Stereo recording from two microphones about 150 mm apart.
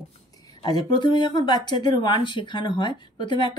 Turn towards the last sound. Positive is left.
turn(degrees=30)  # may be behind; listen again after turning